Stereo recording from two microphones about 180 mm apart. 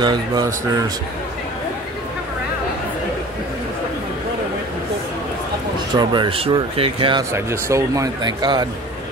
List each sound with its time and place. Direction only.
0.0 s speech: 25° right (ahead or behind)
5.9 s speech: 25° right (ahead or behind)
7.3 s speech: 15° right (ahead or behind)